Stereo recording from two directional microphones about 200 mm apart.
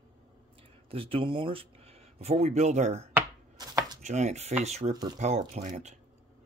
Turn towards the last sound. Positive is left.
turn(degrees=-35)  # may be behind; listen again after turning